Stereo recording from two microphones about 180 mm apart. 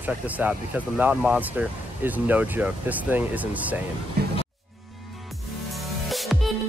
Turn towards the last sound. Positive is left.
turn(degrees=0)  # may be behind; listen again after turning